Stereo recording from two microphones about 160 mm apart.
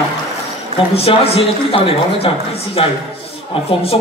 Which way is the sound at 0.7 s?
35° left (ahead or behind).